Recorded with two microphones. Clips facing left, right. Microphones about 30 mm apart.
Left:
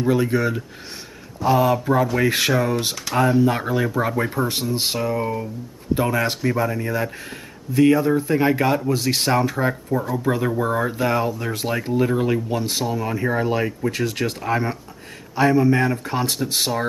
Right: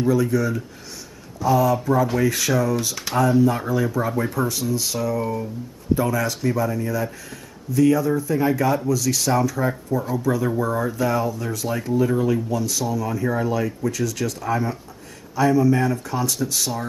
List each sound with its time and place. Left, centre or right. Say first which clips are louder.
0.1 s speech: left 3 dB; left
4.5 s speech: left 1 dB; left